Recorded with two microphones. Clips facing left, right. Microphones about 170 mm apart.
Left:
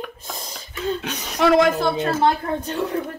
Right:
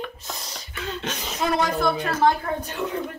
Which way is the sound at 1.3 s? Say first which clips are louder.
Left 8 dB; 80° left.